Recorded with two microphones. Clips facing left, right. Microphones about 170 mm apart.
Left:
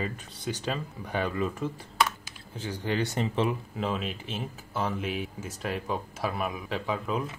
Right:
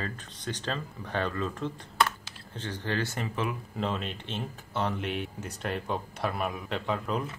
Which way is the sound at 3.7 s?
5° left (ahead or behind).